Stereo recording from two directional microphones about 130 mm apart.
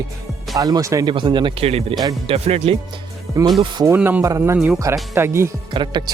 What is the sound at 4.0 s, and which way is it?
Speech, 10° right (ahead or behind).